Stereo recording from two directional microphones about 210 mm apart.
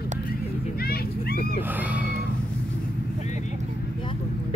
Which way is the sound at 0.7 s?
45° left (ahead or behind).